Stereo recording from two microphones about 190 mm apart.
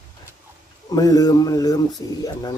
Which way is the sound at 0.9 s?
20° left (ahead or behind).